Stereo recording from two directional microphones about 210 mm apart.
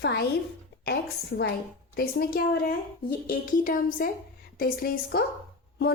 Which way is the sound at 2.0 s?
45° left (ahead or behind).